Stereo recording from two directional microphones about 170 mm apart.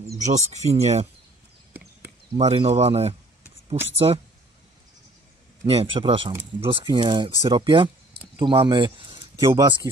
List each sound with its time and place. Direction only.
0.2 s speech: 40° right (ahead or behind)
1.7 s a sound: 10° right (ahead or behind)
2.3 s speech: 35° right (ahead or behind)
5.7 s speech: 35° right (ahead or behind)